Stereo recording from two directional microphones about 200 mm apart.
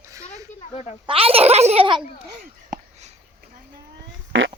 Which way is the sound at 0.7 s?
30° left (ahead or behind).